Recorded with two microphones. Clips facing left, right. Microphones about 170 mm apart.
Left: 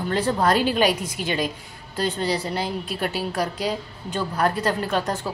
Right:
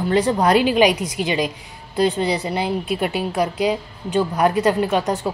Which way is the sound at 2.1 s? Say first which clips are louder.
Right 4 dB; 15° right (ahead or behind).